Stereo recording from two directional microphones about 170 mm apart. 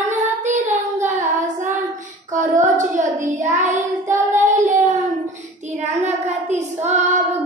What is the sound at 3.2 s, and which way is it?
Child singing, 45° right (ahead or behind).